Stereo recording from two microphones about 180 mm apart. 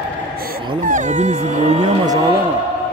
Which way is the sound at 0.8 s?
45° right (ahead or behind).